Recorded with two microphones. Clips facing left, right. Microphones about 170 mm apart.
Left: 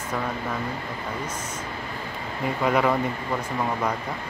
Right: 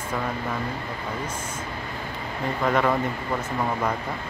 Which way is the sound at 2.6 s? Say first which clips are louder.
Left 1 dB; 5° left (ahead or behind).